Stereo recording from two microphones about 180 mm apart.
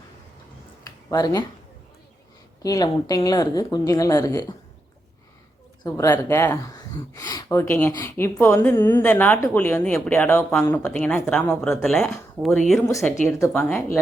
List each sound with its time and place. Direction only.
0.9 s a sound: 20° left (ahead or behind)
2.6 s a woman's voice: 20° left (ahead or behind)
5.8 s a woman's voice: 15° left (ahead or behind)